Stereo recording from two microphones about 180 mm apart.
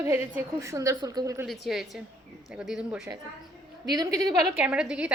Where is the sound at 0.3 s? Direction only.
15° right (ahead or behind).